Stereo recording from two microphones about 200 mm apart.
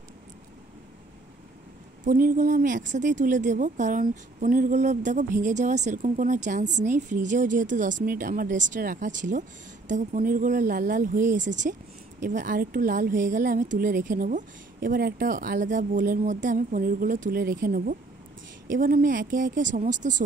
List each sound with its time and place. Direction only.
2.0 s a woman's voice: 40° right (ahead or behind)